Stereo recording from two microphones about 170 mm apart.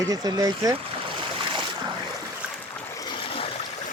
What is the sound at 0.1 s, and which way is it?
Speech, 20° right (ahead or behind).